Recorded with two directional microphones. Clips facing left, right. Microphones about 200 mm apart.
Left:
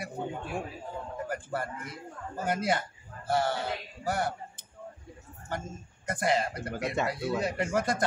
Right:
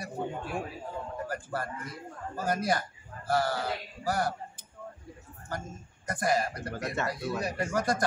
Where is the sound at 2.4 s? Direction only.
25° left (ahead or behind).